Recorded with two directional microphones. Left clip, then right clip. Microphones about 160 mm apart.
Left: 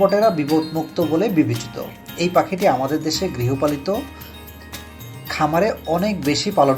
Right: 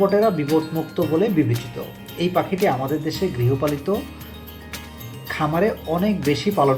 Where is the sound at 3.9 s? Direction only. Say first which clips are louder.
Left 1 dB; 20° left (ahead or behind).